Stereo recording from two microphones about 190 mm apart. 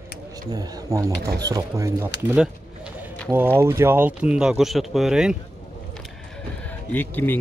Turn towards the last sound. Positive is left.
turn(degrees=10)  # may be behind; listen again after turning